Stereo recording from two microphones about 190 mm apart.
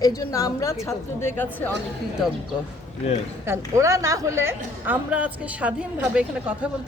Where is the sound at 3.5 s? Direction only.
15° right (ahead or behind).